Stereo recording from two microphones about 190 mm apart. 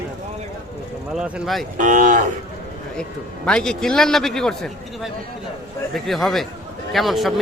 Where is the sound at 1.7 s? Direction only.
45° right (ahead or behind).